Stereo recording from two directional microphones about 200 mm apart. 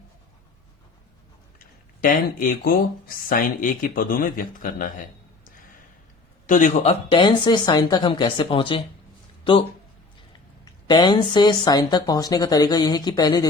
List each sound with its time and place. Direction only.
1.5 s speech: 45° left (ahead or behind)
6.5 s speech: 40° left (ahead or behind)
10.8 s speech: 20° left (ahead or behind)